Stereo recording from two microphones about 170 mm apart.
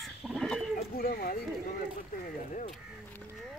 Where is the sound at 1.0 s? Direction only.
60° left (ahead or behind).